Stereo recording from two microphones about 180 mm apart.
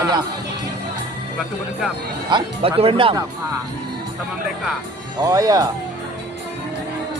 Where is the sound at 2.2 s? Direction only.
25° right (ahead or behind).